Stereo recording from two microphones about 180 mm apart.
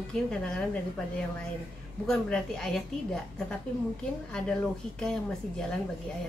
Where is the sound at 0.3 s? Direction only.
5° left (ahead or behind).